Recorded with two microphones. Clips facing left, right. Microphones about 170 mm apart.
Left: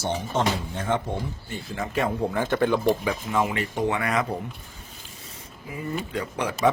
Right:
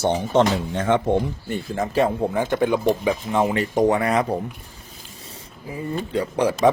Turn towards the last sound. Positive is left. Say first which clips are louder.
# right 7 dB
turn(degrees=-30)  # may be behind; listen again after turning